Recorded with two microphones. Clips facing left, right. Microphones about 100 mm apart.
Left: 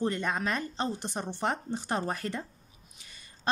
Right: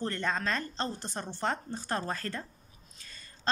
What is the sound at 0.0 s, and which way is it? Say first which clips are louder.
A woman's voice: left 2 dB; 15° left (ahead or behind).